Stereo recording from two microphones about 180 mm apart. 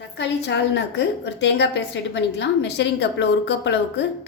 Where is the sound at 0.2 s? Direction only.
80° left.